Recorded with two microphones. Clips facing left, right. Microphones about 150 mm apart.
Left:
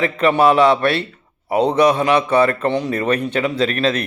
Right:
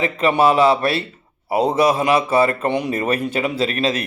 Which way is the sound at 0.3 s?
5° right (ahead or behind).